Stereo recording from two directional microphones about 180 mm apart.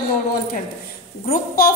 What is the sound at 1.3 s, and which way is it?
Speech, 55° left (ahead or behind).